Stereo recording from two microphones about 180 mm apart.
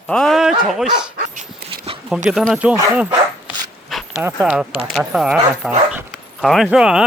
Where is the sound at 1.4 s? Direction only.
35° right (ahead or behind).